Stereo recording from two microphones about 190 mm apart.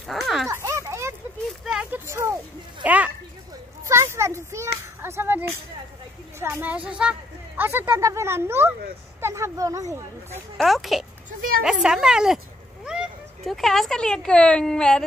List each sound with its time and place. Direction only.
0.0 s a woman's voice: centre (ahead or behind)
0.5 s a sound: 15° right (ahead or behind)
1.6 s speech: 5° right (ahead or behind)
6.4 s speech: 10° right (ahead or behind)
10.6 s a woman's voice: centre (ahead or behind)